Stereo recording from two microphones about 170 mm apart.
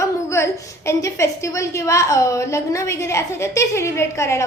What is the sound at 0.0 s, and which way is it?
A woman's voice, 15° left (ahead or behind).